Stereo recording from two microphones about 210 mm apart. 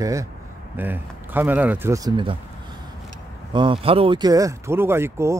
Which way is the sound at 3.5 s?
25° right (ahead or behind).